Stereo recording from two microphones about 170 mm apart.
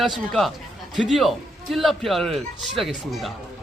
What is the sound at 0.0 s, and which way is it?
A man's voice, centre (ahead or behind).